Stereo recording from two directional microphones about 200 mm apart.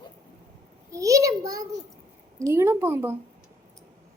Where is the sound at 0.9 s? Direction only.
15° right (ahead or behind).